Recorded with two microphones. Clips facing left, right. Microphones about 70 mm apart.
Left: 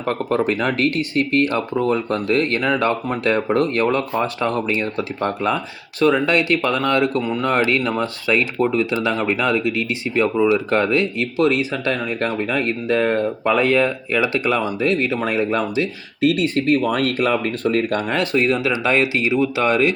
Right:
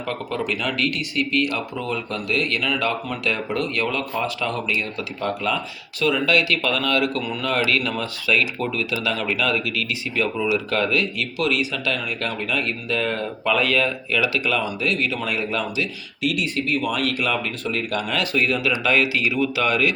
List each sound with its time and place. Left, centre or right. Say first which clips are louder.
0.0 s speech: left 7 dB; left